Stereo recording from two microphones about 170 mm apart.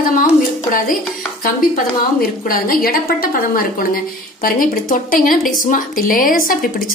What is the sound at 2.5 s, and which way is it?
A woman's voice, 60° left (ahead or behind).